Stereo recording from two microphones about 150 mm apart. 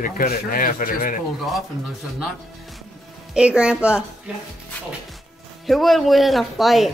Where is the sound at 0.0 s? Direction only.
75° left (ahead or behind).